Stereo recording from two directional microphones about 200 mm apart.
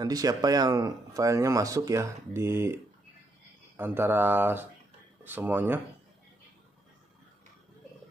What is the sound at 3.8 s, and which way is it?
Speech, 10° right (ahead or behind).